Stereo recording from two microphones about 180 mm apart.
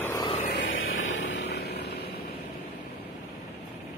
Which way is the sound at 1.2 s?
80° left.